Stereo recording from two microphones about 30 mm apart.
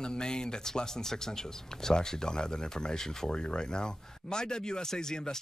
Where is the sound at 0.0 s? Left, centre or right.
Left.